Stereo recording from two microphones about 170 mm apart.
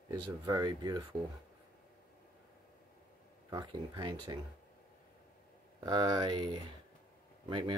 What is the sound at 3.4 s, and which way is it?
Speech, 20° right (ahead or behind).